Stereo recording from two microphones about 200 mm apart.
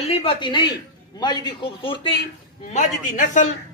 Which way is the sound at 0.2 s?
25° left (ahead or behind).